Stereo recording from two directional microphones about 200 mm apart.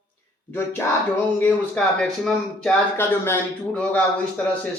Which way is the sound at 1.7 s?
5° left (ahead or behind).